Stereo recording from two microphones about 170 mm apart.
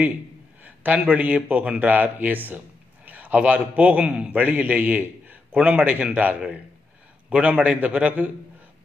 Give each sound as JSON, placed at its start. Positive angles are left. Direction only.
{"t": 0.7, "sound": "a man's voice", "side_deg": -10}